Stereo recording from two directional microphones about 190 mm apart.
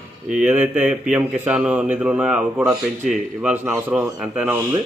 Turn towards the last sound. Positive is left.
turn(degrees=-10)  # may be behind; listen again after turning